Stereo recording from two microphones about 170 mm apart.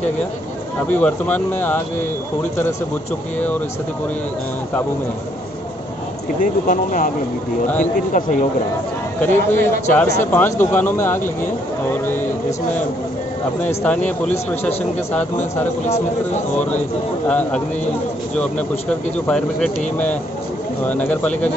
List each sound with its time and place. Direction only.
0.9 s a man's voice: 10° left (ahead or behind)
6.4 s a man's voice: 50° left (ahead or behind)
9.2 s a man's voice: 15° left (ahead or behind)
11.9 s a sound: 10° left (ahead or behind)
13.6 s a man's voice: 10° left (ahead or behind)
17.3 s a man's voice: 10° left (ahead or behind)